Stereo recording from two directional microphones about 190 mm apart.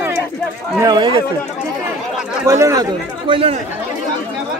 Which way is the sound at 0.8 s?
20° right (ahead or behind).